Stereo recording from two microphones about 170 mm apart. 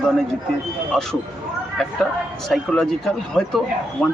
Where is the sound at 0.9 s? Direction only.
Centre (ahead or behind).